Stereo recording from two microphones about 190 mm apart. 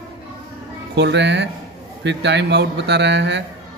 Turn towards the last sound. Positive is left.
turn(degrees=-65)  # may be behind; listen again after turning